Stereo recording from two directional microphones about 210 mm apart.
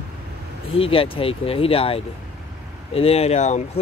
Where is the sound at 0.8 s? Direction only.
25° left (ahead or behind).